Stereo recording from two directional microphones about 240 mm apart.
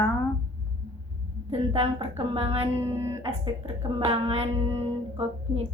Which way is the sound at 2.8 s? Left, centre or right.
Centre.